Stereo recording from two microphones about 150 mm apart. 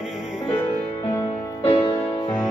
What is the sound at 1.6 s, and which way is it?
Music, 35° left (ahead or behind).